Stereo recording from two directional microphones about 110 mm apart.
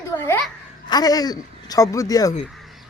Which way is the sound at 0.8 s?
35° left (ahead or behind).